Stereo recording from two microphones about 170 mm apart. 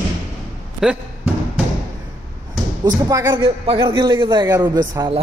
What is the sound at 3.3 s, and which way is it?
A man's voice, 30° right (ahead or behind).